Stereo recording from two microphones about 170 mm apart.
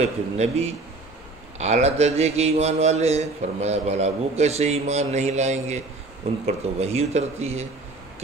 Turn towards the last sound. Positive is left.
turn(degrees=-40)  # may be behind; listen again after turning